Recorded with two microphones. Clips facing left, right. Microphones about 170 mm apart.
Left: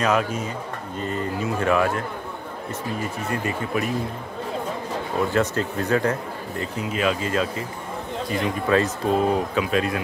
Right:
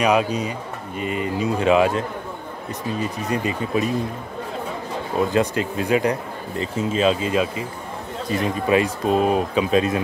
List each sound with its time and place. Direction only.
0.0 s speech: 15° right (ahead or behind)
5.2 s speech: 15° right (ahead or behind)
6.6 s speech: 25° right (ahead or behind)